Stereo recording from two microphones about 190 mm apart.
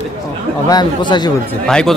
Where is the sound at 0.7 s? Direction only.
20° left (ahead or behind).